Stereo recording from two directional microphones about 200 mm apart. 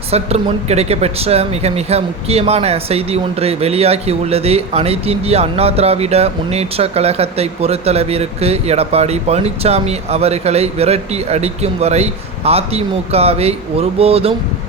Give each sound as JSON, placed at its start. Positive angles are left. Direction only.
{"t": 0.1, "sound": "speech", "side_deg": -30}